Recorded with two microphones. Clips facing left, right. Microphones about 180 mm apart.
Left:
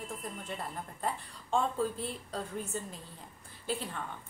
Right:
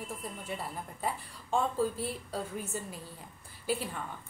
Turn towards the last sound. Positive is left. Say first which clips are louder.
# right 3 dB
turn(degrees=-10)  # may be behind; listen again after turning